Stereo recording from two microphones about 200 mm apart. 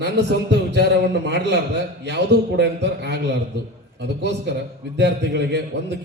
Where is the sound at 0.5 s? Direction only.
55° right (ahead or behind).